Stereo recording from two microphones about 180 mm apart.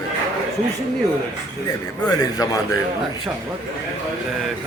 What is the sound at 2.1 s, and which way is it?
Speech, 20° left (ahead or behind).